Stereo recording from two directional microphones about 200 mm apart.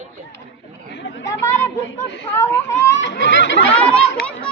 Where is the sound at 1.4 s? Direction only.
15° left (ahead or behind).